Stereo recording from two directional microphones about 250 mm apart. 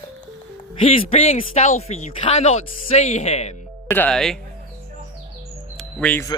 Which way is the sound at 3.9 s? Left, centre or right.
Centre.